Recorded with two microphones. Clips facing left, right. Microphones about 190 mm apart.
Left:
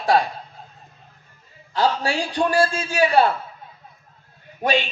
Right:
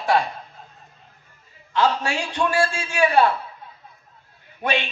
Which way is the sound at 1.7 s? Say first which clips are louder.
Even; 35° left (ahead or behind).